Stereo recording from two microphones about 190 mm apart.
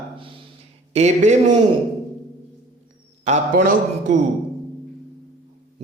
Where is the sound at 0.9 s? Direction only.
35° right (ahead or behind).